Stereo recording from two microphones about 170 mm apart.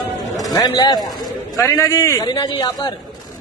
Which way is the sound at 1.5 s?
15° left (ahead or behind).